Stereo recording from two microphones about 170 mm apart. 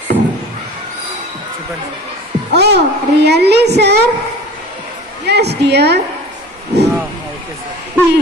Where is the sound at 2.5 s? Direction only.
80° right.